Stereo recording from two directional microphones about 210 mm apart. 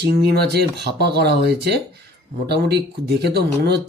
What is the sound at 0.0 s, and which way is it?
Speech, 50° right (ahead or behind).